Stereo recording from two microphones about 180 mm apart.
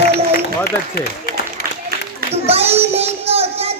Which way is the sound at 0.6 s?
60° left (ahead or behind).